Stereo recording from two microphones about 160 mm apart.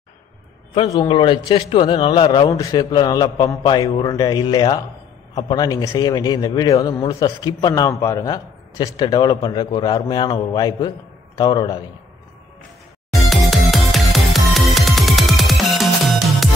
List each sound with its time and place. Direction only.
1.0 s a man's voice: 30° left (ahead or behind)
13.1 s music: centre (ahead or behind)